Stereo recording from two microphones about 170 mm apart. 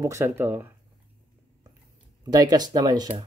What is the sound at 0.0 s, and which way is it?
Speech, 15° right (ahead or behind).